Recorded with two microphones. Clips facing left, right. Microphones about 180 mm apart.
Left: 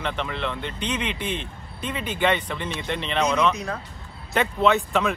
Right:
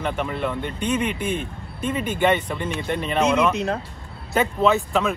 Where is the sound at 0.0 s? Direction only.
10° right (ahead or behind).